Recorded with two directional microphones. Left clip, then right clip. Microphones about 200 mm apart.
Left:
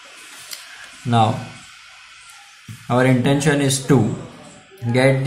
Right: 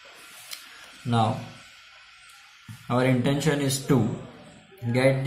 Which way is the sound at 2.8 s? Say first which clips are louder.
Left 7 dB; 5° left (ahead or behind).